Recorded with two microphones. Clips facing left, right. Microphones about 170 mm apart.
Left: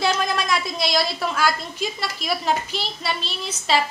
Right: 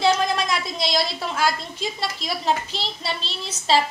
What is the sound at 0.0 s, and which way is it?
A woman's voice, 25° right (ahead or behind).